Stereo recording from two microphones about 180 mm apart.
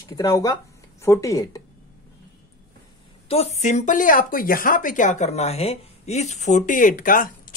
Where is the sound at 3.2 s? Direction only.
35° left (ahead or behind).